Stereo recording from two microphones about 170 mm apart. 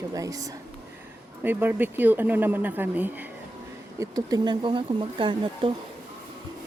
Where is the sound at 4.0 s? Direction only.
20° right (ahead or behind).